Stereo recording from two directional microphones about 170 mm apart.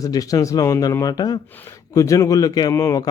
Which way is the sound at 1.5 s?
10° left (ahead or behind).